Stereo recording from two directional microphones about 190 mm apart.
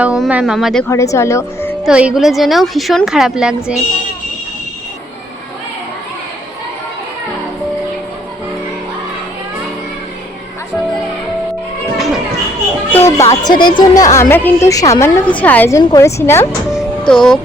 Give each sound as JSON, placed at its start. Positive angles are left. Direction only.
{"t": 0.0, "sound": "speech", "side_deg": -5}
{"t": 0.9, "sound": "a woman's voice", "side_deg": 15}
{"t": 1.8, "sound": "speech", "side_deg": -5}
{"t": 12.9, "sound": "a woman's voice", "side_deg": 15}
{"t": 16.7, "sound": "music", "side_deg": 5}